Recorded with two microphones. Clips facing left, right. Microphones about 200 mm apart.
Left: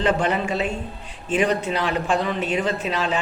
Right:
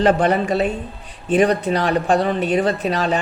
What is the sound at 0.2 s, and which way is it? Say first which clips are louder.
Speech: right 5 dB; 40° right (ahead or behind).